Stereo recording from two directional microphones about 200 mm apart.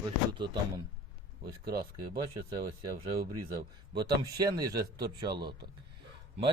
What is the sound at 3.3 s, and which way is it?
A man's voice, 15° right (ahead or behind).